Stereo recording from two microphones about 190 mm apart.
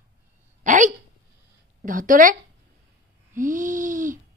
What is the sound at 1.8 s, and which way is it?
Speech, 45° right (ahead or behind).